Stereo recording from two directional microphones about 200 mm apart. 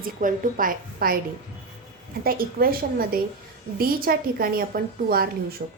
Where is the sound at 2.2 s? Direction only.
50° right (ahead or behind).